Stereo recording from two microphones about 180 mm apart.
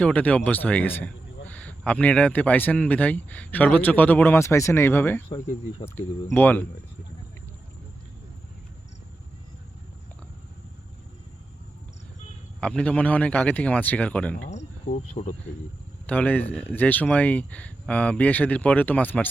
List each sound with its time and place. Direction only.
0.0 s speech: 10° left (ahead or behind)
6.3 s speech: 10° left (ahead or behind)
12.5 s speech: 5° left (ahead or behind)
14.4 s cricket: 40° left (ahead or behind)
16.0 s speech: 10° left (ahead or behind)